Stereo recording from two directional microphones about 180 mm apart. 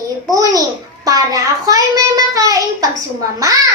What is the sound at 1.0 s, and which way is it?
A child's voice, 20° right (ahead or behind).